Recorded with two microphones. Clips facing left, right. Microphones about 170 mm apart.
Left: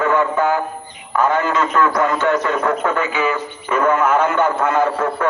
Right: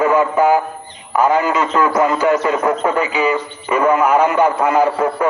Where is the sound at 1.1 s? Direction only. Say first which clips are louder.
Right 3 dB; 10° right (ahead or behind).